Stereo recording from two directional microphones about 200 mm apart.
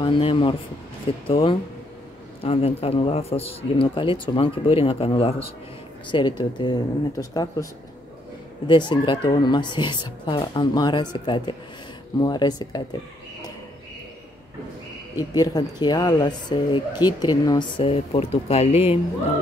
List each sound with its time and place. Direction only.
0.0 s speech: 25° left (ahead or behind)
8.6 s speech: 25° left (ahead or behind)
15.1 s speech: 20° left (ahead or behind)